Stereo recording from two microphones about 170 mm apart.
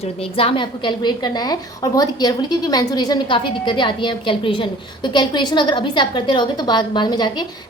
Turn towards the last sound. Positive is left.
turn(degrees=25)  # may be behind; listen again after turning